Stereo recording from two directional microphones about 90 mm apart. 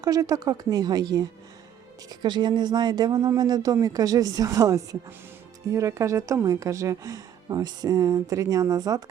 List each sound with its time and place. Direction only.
0.0 s a woman's voice: 40° right (ahead or behind)